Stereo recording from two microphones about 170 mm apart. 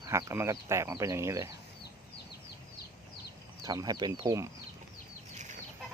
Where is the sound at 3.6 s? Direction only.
20° right (ahead or behind).